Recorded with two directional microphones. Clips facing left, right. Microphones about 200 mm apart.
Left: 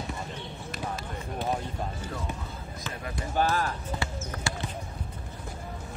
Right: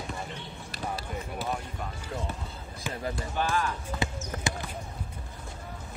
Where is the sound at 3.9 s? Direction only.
20° right (ahead or behind).